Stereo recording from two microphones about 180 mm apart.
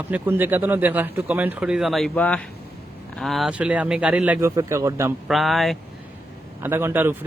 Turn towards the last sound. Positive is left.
turn(degrees=-10)  # may be behind; listen again after turning